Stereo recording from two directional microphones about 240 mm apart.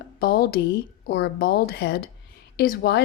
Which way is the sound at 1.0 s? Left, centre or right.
Left.